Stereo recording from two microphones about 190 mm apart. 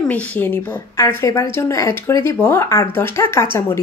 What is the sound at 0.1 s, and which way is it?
Speech, 10° left (ahead or behind).